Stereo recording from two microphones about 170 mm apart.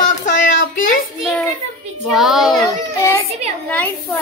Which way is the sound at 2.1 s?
Centre (ahead or behind).